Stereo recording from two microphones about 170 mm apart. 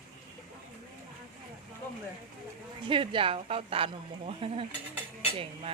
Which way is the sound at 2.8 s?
30° right (ahead or behind).